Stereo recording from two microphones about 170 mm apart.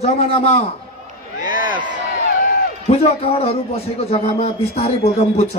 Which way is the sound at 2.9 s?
35° left (ahead or behind).